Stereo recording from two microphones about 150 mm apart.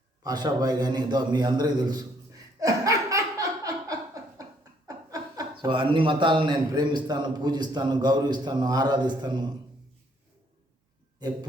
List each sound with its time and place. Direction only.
0.2 s a sound: 25° right (ahead or behind)
4.9 s a man's voice: 25° right (ahead or behind)
11.2 s speech: 25° right (ahead or behind)